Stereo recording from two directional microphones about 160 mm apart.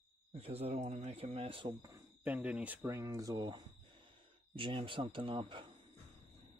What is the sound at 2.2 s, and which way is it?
Speech, 10° right (ahead or behind).